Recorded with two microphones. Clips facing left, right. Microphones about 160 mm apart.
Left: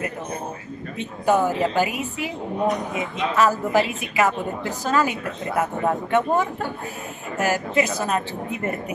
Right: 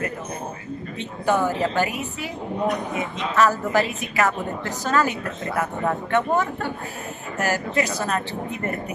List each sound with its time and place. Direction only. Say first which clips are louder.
0.9 s a woman's voice: left 2 dB; 10° left (ahead or behind)